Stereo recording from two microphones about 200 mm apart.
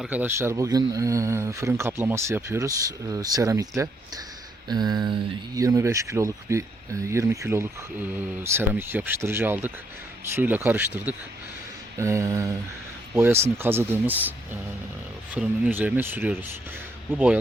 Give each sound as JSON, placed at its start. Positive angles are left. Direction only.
{"t": 0.0, "sound": "speech", "side_deg": -10}
{"t": 15.4, "sound": "speech", "side_deg": -5}